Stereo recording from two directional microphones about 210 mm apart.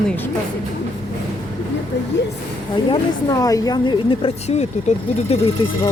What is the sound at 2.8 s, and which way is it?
Speech, 20° left (ahead or behind).